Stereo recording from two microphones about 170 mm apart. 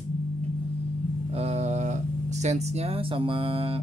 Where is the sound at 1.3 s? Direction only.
40° right (ahead or behind).